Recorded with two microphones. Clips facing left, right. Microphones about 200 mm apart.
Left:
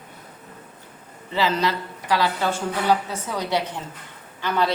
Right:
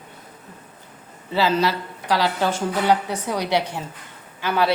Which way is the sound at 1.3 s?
10° right (ahead or behind).